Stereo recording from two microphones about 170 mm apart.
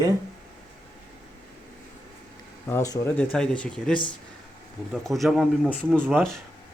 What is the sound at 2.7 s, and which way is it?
Speech, 15° left (ahead or behind).